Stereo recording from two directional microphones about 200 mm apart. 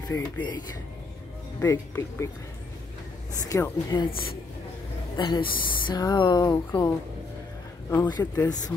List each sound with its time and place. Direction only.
0.1 s speech: 10° left (ahead or behind)
1.6 s speech: 15° left (ahead or behind)
3.4 s speech: 15° left (ahead or behind)
5.1 s speech: 20° left (ahead or behind)
7.9 s speech: 15° left (ahead or behind)